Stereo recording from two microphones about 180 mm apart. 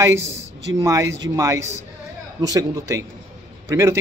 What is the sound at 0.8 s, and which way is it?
A man's voice, 15° right (ahead or behind).